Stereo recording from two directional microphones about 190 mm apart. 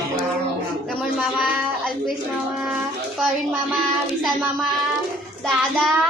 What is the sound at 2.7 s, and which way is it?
Speech, centre (ahead or behind).